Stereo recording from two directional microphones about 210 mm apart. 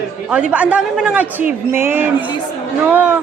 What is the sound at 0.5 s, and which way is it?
A man's voice, 5° right (ahead or behind).